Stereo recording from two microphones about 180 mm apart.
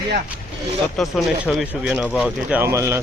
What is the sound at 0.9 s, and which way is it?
Speech, centre (ahead or behind).